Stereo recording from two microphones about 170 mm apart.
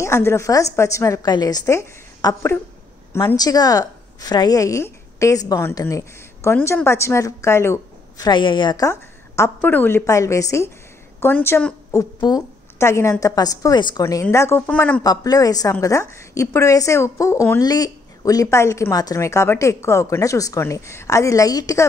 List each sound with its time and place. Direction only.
0.0 s a woman's voice: 15° left (ahead or behind)
8.3 s a woman's voice: 30° left (ahead or behind); by 15.0 s 10° left (ahead or behind)
15.0 s a woman's voice: 20° left (ahead or behind)